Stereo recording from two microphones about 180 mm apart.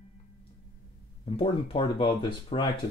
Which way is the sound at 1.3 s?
30° left (ahead or behind).